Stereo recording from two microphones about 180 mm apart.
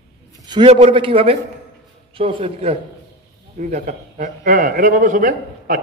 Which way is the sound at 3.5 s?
45° right (ahead or behind).